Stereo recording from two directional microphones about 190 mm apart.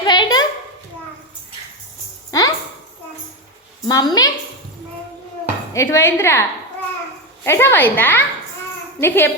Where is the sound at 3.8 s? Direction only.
20° left (ahead or behind).